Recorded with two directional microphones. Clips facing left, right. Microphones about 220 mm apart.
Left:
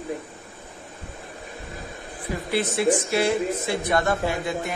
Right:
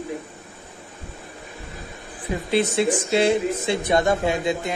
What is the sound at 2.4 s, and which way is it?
Speech, 20° right (ahead or behind).